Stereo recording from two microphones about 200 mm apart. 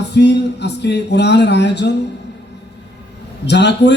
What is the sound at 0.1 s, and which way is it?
Speech, 60° left (ahead or behind).